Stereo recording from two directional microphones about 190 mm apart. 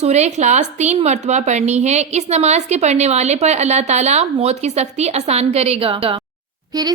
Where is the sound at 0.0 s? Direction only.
35° right (ahead or behind).